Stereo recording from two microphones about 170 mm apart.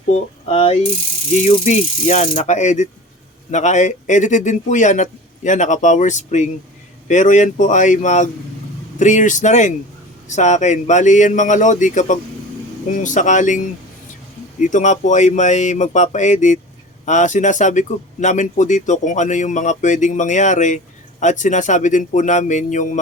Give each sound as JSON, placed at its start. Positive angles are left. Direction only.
{"t": 0.1, "sound": "coin", "side_deg": 40}
{"t": 1.4, "sound": "speech", "side_deg": 40}
{"t": 14.6, "sound": "speech", "side_deg": 45}